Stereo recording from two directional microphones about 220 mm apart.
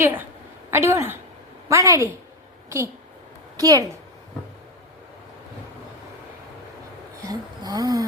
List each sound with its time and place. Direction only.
0.0 s a woman's voice: 10° right (ahead or behind)
7.3 s speech: 20° right (ahead or behind)